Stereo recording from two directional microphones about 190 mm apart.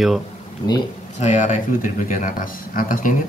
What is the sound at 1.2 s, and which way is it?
Speech, 40° left (ahead or behind).